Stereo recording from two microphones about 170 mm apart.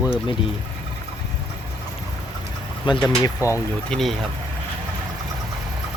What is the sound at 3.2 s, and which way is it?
Speech, 15° left (ahead or behind).